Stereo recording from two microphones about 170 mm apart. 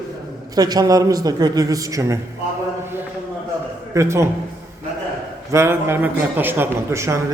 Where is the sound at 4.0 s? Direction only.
15° right (ahead or behind).